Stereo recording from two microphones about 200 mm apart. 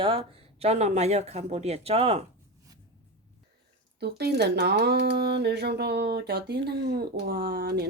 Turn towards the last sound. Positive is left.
turn(degrees=-50)  # may be behind; listen again after turning